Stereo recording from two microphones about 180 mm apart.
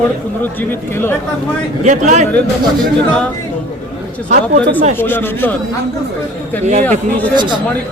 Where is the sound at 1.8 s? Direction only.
40° right (ahead or behind).